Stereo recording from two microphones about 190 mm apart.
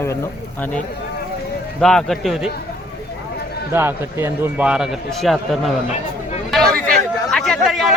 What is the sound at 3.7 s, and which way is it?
A man's voice, 10° right (ahead or behind).